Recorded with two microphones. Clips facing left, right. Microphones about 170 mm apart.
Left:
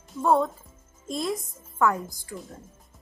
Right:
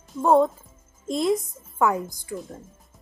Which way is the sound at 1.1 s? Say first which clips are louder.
Right 7 dB; 20° right (ahead or behind).